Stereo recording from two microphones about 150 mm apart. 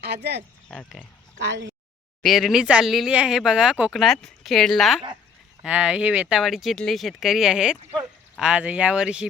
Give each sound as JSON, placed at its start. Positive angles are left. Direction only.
{"t": 0.0, "sound": "speech", "side_deg": -90}
{"t": 0.7, "sound": "speech", "side_deg": 5}
{"t": 2.2, "sound": "speech", "side_deg": 0}